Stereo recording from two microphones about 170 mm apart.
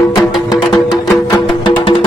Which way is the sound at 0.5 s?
25° left (ahead or behind).